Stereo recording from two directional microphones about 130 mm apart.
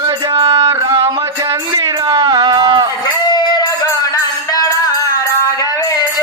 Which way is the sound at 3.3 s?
35° left (ahead or behind).